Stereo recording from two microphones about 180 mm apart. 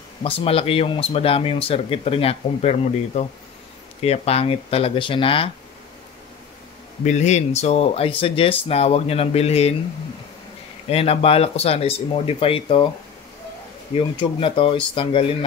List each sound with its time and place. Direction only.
0.2 s speech: 30° left (ahead or behind)
7.1 s speech: 40° left (ahead or behind)
10.9 s speech: 35° left (ahead or behind)
13.9 s speech: 30° left (ahead or behind)